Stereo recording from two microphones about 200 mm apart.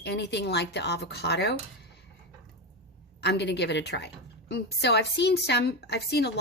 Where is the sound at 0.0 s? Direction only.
60° left (ahead or behind).